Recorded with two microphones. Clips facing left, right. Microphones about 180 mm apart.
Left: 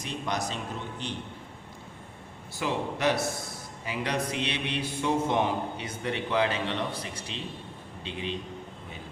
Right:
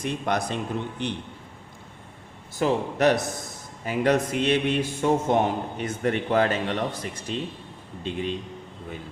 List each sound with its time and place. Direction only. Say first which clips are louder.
0.0 s speech: right 5 dB; 55° right (ahead or behind)
2.6 s a man's voice: right 7 dB; 45° right (ahead or behind)